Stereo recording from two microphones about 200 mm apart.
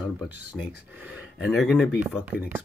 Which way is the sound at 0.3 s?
10° right (ahead or behind).